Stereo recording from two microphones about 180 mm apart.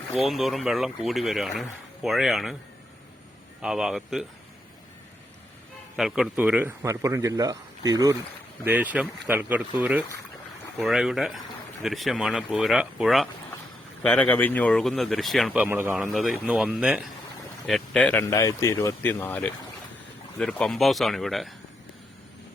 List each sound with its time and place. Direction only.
0.3 s speech: centre (ahead or behind)
3.6 s speech: 5° right (ahead or behind)
6.0 s a man's voice: centre (ahead or behind); by 8.1 s 20° right (ahead or behind)
8.6 s a man's voice: 10° right (ahead or behind)
15.6 s a man's voice: 10° right (ahead or behind)
16.1 s speech: centre (ahead or behind)